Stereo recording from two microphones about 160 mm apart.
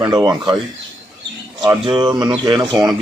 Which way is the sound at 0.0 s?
25° right (ahead or behind).